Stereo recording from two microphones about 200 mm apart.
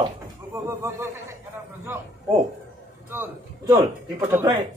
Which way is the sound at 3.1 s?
10° right (ahead or behind).